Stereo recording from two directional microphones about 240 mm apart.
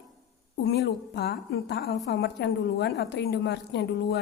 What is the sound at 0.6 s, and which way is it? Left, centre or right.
A woman's voice, left.